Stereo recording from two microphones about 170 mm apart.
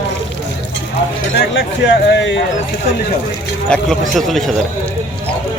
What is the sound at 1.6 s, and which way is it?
Speech, 90° left.